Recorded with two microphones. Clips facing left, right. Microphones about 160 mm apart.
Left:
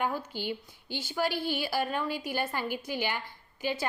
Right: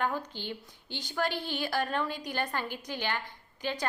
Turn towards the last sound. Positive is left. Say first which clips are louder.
# left 2 dB
turn(degrees=5)  # may be behind; listen again after turning